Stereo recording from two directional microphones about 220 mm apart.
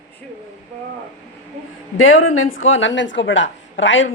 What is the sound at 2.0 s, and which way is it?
A woman's voice, 65° left (ahead or behind).